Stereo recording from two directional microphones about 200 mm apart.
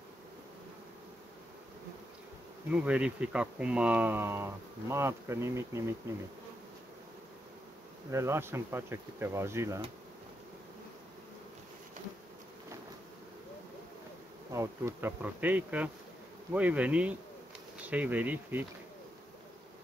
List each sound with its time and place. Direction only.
2.7 s speech: 5° right (ahead or behind)
8.1 s speech: 15° right (ahead or behind)
14.5 s speech: 15° right (ahead or behind)